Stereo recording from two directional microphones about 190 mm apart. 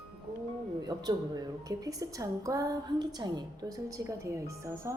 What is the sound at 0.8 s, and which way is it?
A woman's voice, 20° right (ahead or behind).